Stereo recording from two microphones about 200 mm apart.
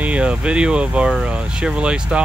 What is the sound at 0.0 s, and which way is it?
Speech, 5° right (ahead or behind).